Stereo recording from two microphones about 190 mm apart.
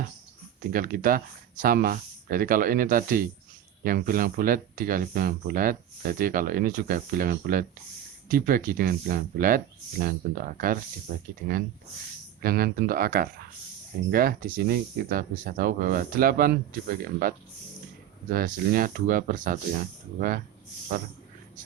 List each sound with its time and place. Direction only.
0.6 s speech: 50° right (ahead or behind)
12.4 s speech: 50° right (ahead or behind)